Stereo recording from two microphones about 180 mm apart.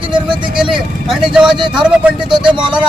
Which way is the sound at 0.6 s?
5° right (ahead or behind).